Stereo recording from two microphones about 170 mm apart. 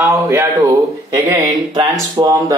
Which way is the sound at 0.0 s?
15° right (ahead or behind).